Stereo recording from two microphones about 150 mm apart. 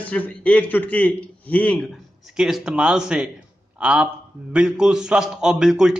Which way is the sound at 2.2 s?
Centre (ahead or behind).